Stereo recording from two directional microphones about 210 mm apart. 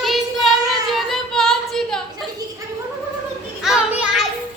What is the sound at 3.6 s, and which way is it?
Children playing, 5° right (ahead or behind).